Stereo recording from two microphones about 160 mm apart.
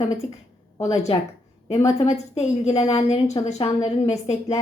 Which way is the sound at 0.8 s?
45° left (ahead or behind).